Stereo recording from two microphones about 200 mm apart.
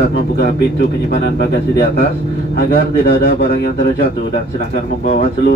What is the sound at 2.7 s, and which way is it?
Speech, 50° left (ahead or behind).